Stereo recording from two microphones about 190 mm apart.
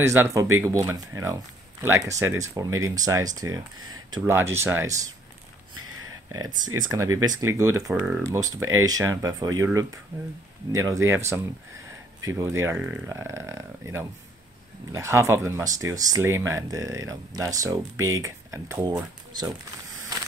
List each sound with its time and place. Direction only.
0.0 s speech: 15° right (ahead or behind)
5.8 s a sound: 90° right
6.2 s speech: 20° right (ahead or behind)
7.9 s speech: 5° right (ahead or behind)
8.2 s speech: 20° right (ahead or behind)